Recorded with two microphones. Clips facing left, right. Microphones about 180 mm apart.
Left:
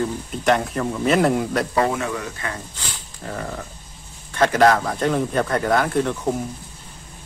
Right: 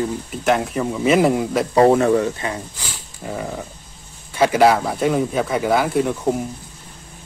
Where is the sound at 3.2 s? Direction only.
10° right (ahead or behind).